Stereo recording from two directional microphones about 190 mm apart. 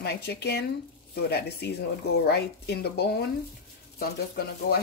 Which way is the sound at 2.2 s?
60° left (ahead or behind).